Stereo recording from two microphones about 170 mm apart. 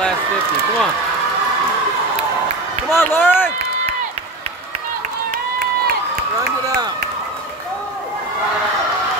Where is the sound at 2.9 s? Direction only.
15° left (ahead or behind).